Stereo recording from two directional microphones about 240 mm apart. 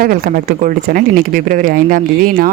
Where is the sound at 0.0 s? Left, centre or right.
Right.